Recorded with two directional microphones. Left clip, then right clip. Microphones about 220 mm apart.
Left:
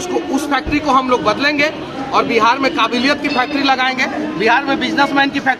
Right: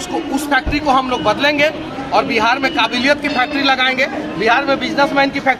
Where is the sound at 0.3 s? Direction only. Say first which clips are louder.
Right 3 dB; centre (ahead or behind).